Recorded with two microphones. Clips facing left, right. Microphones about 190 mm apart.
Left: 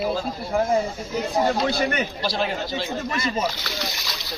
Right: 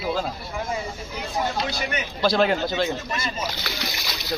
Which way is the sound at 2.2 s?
55° right (ahead or behind).